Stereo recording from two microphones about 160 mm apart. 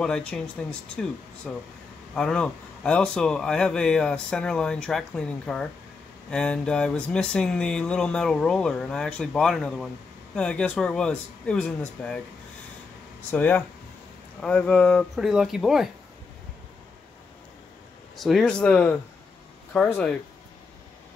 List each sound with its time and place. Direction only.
0.0 s speech: 5° left (ahead or behind)
13.3 s speech: 10° left (ahead or behind)
18.1 s speech: centre (ahead or behind)